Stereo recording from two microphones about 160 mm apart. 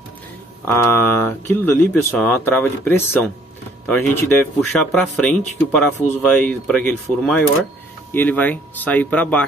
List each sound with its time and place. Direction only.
0.7 s speech: 15° left (ahead or behind)